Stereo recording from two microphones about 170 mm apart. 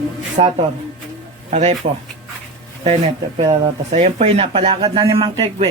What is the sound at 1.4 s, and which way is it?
Speech, 45° right (ahead or behind).